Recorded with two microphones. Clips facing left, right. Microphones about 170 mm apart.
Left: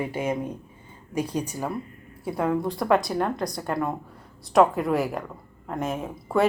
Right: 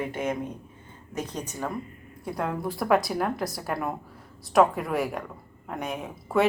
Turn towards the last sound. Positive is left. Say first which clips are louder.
# left 1 dB
turn(degrees=0)  # may be behind; listen again after turning